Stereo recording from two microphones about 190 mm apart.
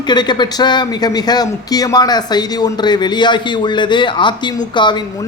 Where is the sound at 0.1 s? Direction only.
25° left (ahead or behind).